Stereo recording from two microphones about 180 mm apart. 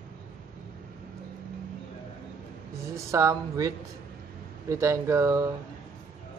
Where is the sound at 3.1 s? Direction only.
20° right (ahead or behind).